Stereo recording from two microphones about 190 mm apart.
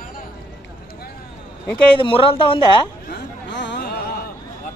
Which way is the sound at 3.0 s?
65° left (ahead or behind).